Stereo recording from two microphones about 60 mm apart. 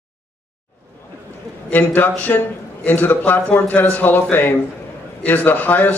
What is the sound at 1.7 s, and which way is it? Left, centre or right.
A man's voice, left.